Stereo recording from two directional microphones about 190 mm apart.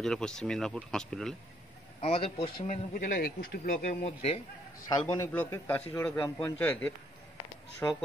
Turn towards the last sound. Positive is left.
turn(degrees=15)  # may be behind; listen again after turning